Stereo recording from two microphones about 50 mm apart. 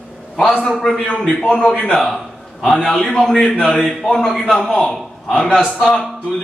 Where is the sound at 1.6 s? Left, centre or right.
Centre.